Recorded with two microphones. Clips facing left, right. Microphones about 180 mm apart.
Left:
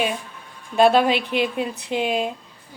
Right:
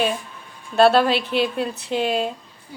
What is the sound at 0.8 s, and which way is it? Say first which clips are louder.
A woman's voice: right 1 dB; 15° left (ahead or behind).